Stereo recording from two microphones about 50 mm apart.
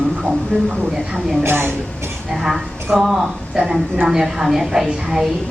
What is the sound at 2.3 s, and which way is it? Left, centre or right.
A woman's voice, centre.